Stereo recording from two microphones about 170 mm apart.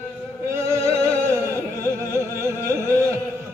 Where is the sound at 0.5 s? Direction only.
15° right (ahead or behind).